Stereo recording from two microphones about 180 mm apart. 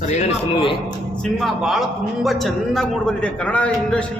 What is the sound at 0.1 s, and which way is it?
Speech, 35° left (ahead or behind).